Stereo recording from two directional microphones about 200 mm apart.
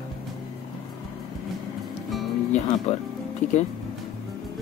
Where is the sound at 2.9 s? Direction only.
30° left (ahead or behind).